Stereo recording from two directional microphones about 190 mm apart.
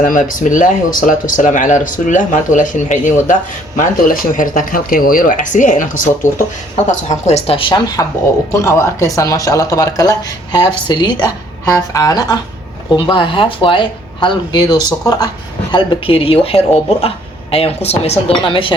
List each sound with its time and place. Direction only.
0.0 s speech: 45° left (ahead or behind); by 18.7 s 25° left (ahead or behind)